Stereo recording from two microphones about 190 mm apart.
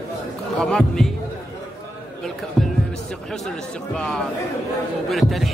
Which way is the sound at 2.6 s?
Centre (ahead or behind).